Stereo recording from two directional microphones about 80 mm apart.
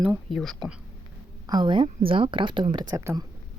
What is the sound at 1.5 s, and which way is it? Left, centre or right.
Speech, right.